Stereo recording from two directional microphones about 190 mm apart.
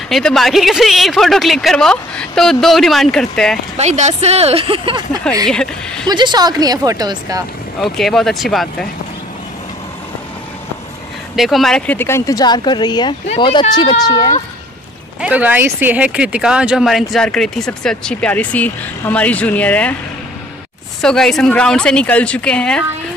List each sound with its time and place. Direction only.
0.1 s speech: centre (ahead or behind)
3.7 s speech: 35° right (ahead or behind)
5.5 s speech: 5° left (ahead or behind)
6.0 s speech: 20° right (ahead or behind)
7.8 s speech: centre (ahead or behind)
11.3 s speech: centre (ahead or behind); by 14.3 s 25° left (ahead or behind)
15.1 s speech: 5° right (ahead or behind)
21.0 s speech: 5° left (ahead or behind)